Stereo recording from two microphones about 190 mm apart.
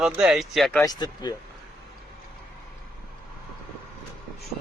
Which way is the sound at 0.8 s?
20° left (ahead or behind).